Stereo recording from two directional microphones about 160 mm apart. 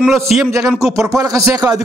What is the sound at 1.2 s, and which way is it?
Speech, 20° right (ahead or behind).